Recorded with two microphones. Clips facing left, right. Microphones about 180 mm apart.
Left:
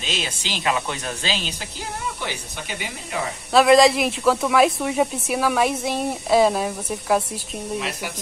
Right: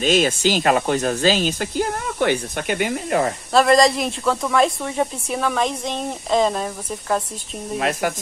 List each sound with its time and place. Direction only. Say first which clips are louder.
0.0 s speech: right 12 dB; 50° right (ahead or behind)
3.5 s speech: left 1 dB; centre (ahead or behind)